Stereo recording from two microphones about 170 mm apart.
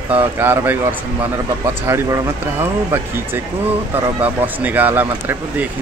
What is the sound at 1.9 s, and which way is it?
Speech, 15° right (ahead or behind).